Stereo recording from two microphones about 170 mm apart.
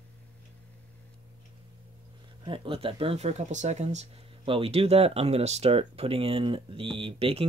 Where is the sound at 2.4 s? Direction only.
30° right (ahead or behind).